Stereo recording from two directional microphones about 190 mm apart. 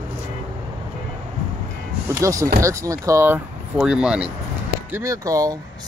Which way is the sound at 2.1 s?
15° right (ahead or behind).